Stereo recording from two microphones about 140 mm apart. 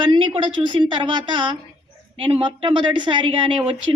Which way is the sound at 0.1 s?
35° right (ahead or behind).